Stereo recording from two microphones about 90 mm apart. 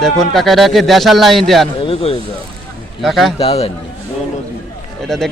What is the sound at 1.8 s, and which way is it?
Speech, 90° left.